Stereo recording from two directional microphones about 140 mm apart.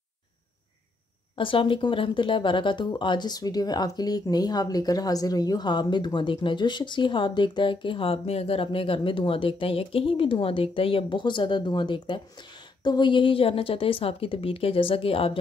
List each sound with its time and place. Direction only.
1.3 s speech: 35° left (ahead or behind)